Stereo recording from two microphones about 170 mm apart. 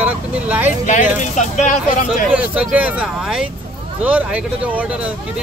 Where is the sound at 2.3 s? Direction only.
10° right (ahead or behind).